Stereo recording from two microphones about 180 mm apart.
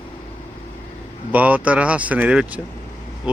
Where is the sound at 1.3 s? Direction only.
10° right (ahead or behind).